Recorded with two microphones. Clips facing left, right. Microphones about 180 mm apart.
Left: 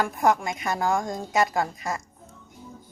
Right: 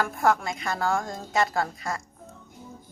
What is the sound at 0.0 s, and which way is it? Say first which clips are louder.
A woman's voice: left 1 dB; 15° left (ahead or behind).